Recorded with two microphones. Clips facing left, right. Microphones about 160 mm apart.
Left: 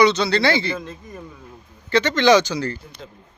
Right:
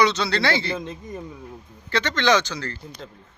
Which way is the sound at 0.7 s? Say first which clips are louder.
Right 1 dB; 20° right (ahead or behind).